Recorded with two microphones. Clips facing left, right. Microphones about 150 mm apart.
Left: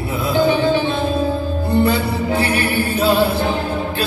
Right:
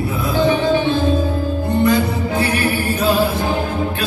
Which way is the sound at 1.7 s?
30° left (ahead or behind).